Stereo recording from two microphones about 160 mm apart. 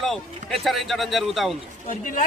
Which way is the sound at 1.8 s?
55° left (ahead or behind).